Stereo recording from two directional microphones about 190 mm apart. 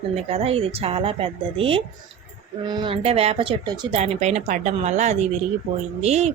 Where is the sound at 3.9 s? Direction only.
35° right (ahead or behind).